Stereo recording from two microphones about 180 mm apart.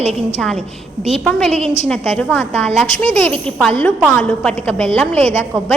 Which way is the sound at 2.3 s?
10° left (ahead or behind).